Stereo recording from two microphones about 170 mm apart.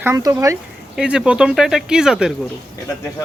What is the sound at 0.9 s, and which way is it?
Speech, 5° right (ahead or behind).